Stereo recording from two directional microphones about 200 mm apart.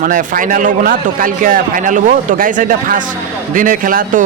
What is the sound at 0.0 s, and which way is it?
Speech, 40° right (ahead or behind).